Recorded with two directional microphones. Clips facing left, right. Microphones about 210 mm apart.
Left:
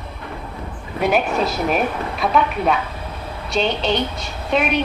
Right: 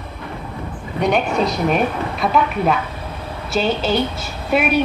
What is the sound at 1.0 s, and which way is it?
A woman's voice, 5° left (ahead or behind).